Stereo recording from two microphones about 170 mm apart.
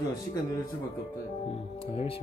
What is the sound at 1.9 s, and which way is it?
Speech, 35° left (ahead or behind).